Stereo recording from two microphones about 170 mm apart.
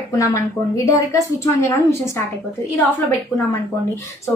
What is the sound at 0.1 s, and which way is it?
A woman's voice, 20° left (ahead or behind).